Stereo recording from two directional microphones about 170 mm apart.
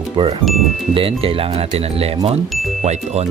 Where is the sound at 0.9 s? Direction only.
30° right (ahead or behind).